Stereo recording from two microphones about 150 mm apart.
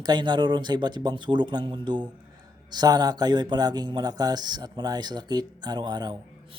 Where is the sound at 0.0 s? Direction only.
30° right (ahead or behind).